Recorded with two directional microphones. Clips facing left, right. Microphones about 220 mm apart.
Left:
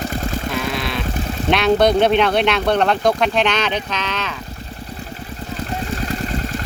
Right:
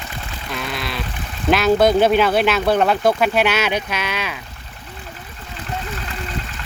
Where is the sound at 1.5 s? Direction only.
Centre (ahead or behind).